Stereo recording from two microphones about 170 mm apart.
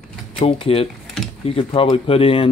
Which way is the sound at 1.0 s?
Centre (ahead or behind).